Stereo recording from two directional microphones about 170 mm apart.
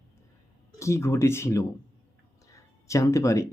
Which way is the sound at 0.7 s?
15° left (ahead or behind).